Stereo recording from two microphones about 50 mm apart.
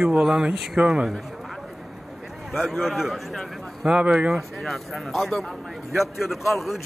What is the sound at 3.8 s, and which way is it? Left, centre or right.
Speech, centre.